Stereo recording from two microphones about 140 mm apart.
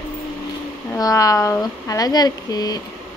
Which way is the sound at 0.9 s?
25° left (ahead or behind).